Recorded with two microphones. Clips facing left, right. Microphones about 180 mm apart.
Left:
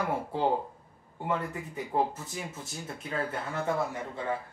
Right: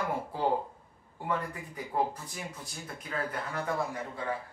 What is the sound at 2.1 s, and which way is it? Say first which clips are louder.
Speech: left 3 dB; 25° left (ahead or behind).